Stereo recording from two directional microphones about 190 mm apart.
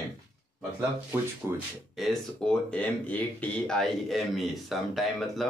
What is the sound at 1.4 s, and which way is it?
Speech, centre (ahead or behind).